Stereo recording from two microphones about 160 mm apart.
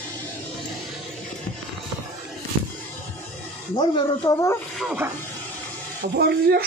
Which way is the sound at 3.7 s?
30° left (ahead or behind).